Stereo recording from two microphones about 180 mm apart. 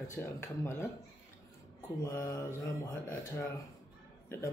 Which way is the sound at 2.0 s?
15° left (ahead or behind).